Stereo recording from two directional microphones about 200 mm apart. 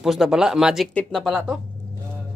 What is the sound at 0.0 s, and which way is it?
Speech, centre (ahead or behind).